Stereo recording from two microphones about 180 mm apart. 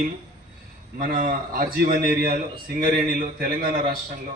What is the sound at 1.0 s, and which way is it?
A man's voice, 55° right (ahead or behind).